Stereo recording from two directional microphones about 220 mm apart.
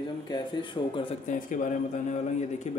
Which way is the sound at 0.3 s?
20° left (ahead or behind).